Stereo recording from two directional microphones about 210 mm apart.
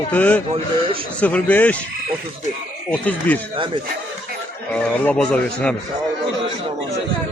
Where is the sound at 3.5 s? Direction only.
25° right (ahead or behind).